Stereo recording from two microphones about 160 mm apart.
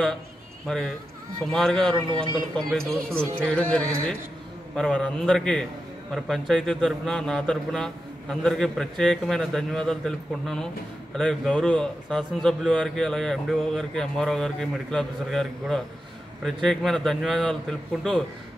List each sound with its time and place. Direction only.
0.7 s a man's voice: 5° left (ahead or behind)